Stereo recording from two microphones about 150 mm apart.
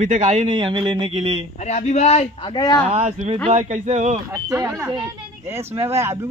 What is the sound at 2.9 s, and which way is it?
Speech, 50° right (ahead or behind).